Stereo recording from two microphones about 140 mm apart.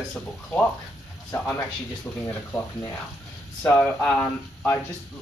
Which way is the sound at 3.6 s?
5° left (ahead or behind).